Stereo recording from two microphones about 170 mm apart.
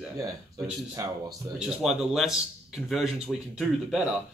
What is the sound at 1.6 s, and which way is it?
Speech, centre (ahead or behind).